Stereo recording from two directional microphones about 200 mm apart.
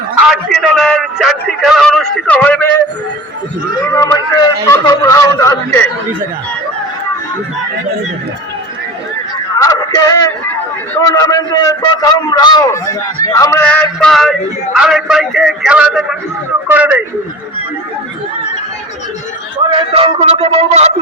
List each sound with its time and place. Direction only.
0.5 s a man's voice: centre (ahead or behind)
3.8 s a man's voice: 15° left (ahead or behind)
9.6 s a sound: 15° left (ahead or behind)
10.9 s a man's voice: 15° left (ahead or behind); by 17.0 s 10° right (ahead or behind)
19.7 s speech: 30° right (ahead or behind)